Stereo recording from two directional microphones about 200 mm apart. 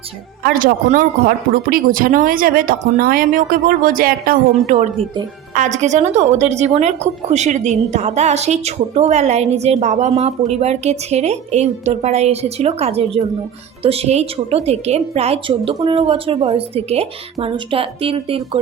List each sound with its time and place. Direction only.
0.4 s speech: 45° right (ahead or behind)
5.5 s a woman's voice: 35° right (ahead or behind)